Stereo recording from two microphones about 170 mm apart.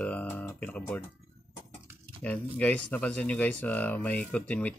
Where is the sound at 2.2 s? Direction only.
10° left (ahead or behind).